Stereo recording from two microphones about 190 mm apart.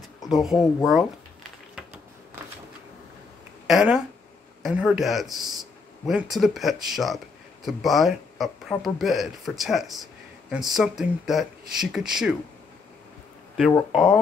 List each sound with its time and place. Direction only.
0.5 s speech: 20° left (ahead or behind)
3.6 s speech: 5° right (ahead or behind)
13.6 s speech: centre (ahead or behind)